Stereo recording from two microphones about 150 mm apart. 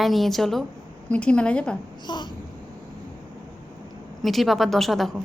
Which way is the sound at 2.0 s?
30° left (ahead or behind).